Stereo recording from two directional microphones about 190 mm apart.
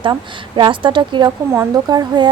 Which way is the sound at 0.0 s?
25° right (ahead or behind).